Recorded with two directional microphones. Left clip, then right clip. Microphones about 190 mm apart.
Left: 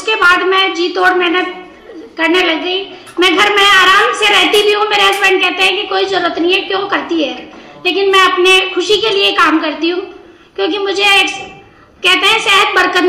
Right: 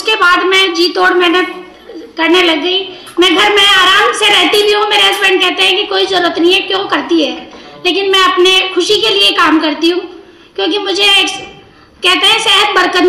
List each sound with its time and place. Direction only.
0.0 s a woman's voice: 45° right (ahead or behind)